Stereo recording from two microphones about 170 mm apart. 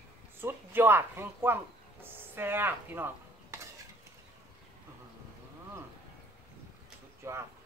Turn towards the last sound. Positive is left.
turn(degrees=-15)  # may be behind; listen again after turning